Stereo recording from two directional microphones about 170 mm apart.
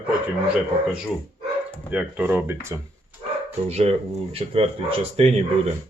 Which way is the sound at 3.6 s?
40° right (ahead or behind).